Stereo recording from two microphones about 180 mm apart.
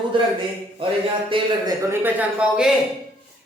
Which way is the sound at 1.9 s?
10° right (ahead or behind).